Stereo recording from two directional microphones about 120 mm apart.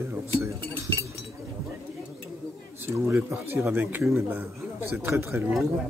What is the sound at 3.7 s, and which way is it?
Speech, 15° right (ahead or behind).